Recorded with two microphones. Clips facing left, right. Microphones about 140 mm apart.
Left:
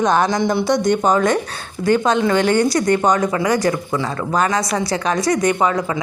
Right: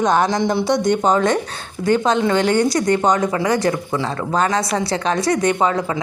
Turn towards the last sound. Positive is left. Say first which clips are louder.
# even
turn(degrees=-30)  # may be behind; listen again after turning